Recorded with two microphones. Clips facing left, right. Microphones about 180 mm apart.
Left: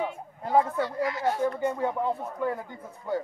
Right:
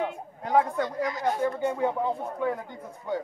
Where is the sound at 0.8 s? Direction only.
20° right (ahead or behind).